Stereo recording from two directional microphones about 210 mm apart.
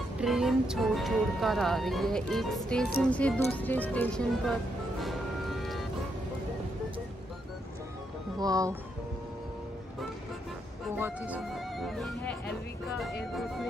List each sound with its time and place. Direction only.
0.2 s speech: centre (ahead or behind)
5.0 s music: centre (ahead or behind)
8.4 s speech: 15° right (ahead or behind)
11.0 s speech: 10° right (ahead or behind)